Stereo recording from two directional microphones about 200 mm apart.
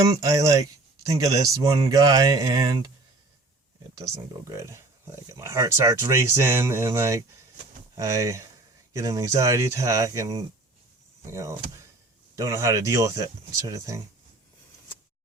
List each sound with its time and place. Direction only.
0.1 s speech: 15° right (ahead or behind)
3.9 s speech: 15° right (ahead or behind)